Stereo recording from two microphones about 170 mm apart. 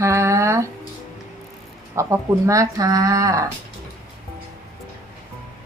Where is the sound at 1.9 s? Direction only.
15° right (ahead or behind).